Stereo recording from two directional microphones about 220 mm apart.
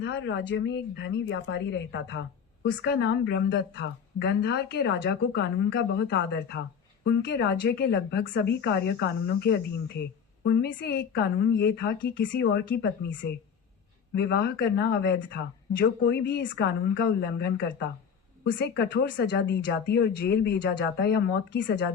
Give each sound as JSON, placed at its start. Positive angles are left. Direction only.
{"t": 0.0, "sound": "speech", "side_deg": 55}
{"t": 14.2, "sound": "speech", "side_deg": 50}